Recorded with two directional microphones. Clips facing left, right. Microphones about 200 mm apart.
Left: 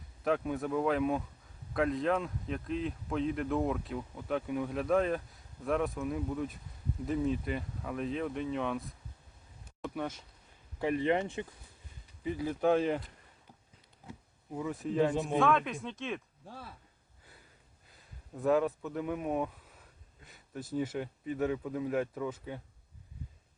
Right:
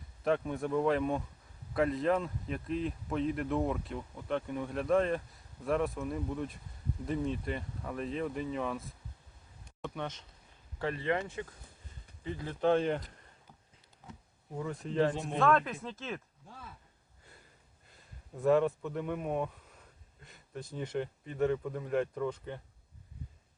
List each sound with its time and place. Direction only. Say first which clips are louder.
0.3 s speech: even; centre (ahead or behind)
9.6 s a sound: left 2 dB; 5° left (ahead or behind)
10.8 s speech: left 3 dB; 15° left (ahead or behind)
12.2 s speech: left 1 dB; 10° left (ahead or behind)
14.6 s speech: left 1 dB; 5° left (ahead or behind)
17.8 s speech: even; centre (ahead or behind)